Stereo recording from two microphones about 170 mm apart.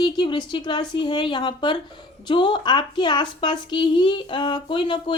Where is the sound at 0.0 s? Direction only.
25° left (ahead or behind).